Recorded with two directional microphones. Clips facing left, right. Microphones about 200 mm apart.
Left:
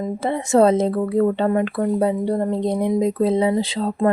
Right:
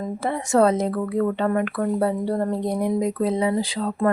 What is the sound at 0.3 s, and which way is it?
Speech, 25° left (ahead or behind).